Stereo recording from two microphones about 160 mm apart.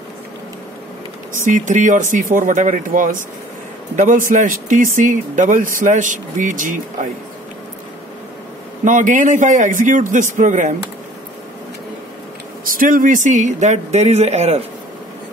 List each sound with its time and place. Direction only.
1.4 s speech: 50° right (ahead or behind)
8.8 s speech: 55° right (ahead or behind)
12.6 s speech: 60° right (ahead or behind); by 14.6 s 40° right (ahead or behind)